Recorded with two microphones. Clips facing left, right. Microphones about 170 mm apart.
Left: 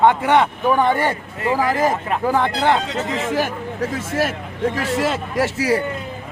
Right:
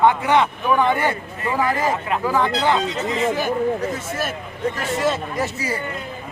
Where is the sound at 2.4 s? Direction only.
60° left (ahead or behind); by 5.8 s 85° left.